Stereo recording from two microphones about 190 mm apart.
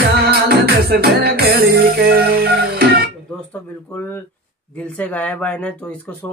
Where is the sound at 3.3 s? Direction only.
10° left (ahead or behind).